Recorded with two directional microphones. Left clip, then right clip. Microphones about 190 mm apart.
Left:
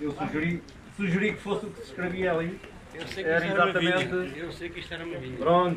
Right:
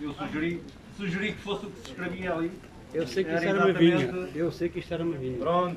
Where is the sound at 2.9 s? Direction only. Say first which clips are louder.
Right 9 dB; 55° right (ahead or behind).